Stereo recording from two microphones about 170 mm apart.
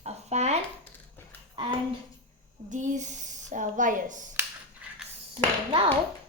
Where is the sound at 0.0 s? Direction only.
40° right (ahead or behind).